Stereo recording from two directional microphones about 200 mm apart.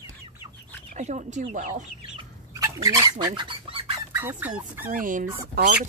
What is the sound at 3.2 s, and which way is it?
Bird, 20° right (ahead or behind).